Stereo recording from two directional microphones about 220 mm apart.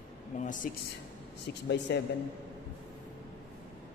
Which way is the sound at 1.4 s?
50° left (ahead or behind).